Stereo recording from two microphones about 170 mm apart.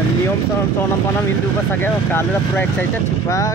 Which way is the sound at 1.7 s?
10° left (ahead or behind).